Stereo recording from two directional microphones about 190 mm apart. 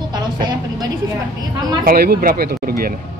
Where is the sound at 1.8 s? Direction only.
55° right (ahead or behind).